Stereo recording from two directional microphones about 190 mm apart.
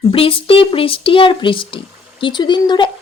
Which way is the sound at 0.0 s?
30° left (ahead or behind).